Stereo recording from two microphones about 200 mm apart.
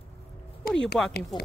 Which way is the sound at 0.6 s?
45° left (ahead or behind).